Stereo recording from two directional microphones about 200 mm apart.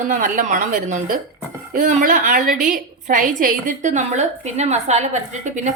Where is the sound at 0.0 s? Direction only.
40° right (ahead or behind).